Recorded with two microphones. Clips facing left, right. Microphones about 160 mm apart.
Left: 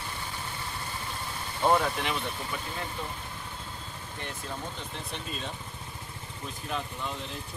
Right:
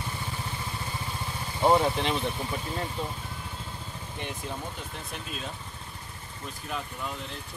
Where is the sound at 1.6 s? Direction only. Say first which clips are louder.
Right 3 dB; 20° right (ahead or behind).